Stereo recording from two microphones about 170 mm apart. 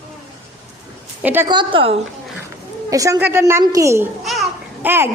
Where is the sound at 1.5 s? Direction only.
30° right (ahead or behind).